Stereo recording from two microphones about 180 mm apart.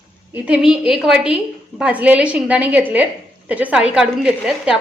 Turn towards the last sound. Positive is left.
turn(degrees=-5)  # may be behind; listen again after turning